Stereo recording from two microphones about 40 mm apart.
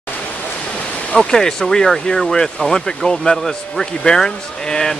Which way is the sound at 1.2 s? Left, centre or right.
Centre.